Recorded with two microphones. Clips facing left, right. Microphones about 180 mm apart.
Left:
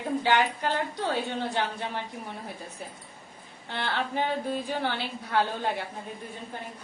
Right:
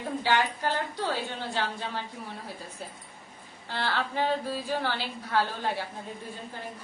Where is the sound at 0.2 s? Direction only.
20° left (ahead or behind).